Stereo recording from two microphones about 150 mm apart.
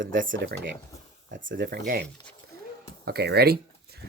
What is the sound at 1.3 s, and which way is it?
Speech, 65° right (ahead or behind).